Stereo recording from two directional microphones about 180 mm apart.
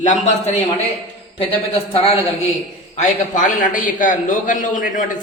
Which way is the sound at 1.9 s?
30° left (ahead or behind).